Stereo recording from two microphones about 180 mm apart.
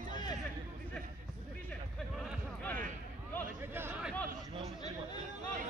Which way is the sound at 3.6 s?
10° right (ahead or behind).